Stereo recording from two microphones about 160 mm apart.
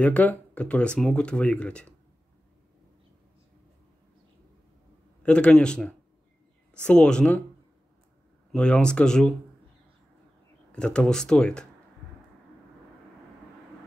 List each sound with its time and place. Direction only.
0.0 s speech: 10° left (ahead or behind)
5.2 s speech: 5° left (ahead or behind)
8.5 s speech: 5° left (ahead or behind)
10.7 s speech: 5° left (ahead or behind)